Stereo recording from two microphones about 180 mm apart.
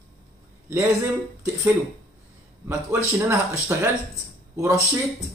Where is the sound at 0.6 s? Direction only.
15° right (ahead or behind).